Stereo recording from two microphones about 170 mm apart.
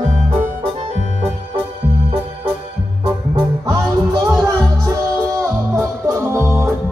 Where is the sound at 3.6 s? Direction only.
20° right (ahead or behind).